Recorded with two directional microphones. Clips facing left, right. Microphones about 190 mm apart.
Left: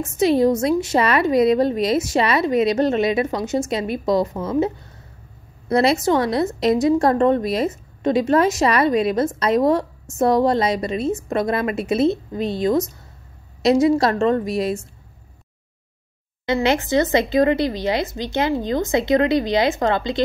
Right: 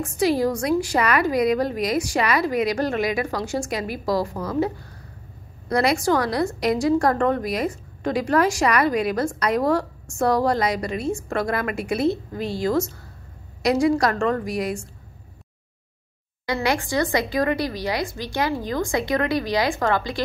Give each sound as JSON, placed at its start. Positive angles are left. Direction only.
{"t": 0.0, "sound": "a woman's voice", "side_deg": 25}
{"t": 16.4, "sound": "a woman's voice", "side_deg": 25}